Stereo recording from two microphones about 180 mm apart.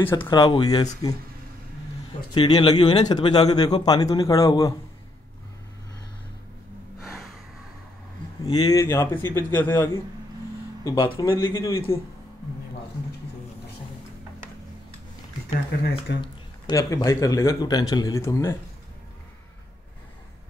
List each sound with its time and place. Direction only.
0.3 s speech: 25° left (ahead or behind)
2.3 s speech: 30° left (ahead or behind)
8.5 s a man's voice: 20° left (ahead or behind)
15.8 s speech: 65° left (ahead or behind)
16.2 s speech: 20° left (ahead or behind)